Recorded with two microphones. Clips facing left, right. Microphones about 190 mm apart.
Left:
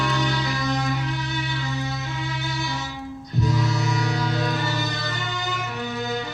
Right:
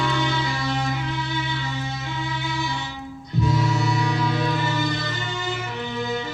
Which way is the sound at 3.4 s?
40° left (ahead or behind).